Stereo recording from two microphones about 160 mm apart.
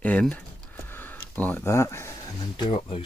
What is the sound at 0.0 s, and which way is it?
Speech, 10° left (ahead or behind).